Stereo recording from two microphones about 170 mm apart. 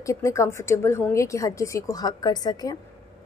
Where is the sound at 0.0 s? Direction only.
20° left (ahead or behind).